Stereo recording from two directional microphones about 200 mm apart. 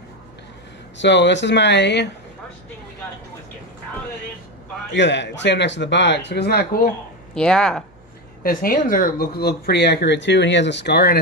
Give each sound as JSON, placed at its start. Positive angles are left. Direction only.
{"t": 0.9, "sound": "speech", "side_deg": 60}
{"t": 4.9, "sound": "speech", "side_deg": 60}
{"t": 7.3, "sound": "speech", "side_deg": 5}
{"t": 8.4, "sound": "speech", "side_deg": 45}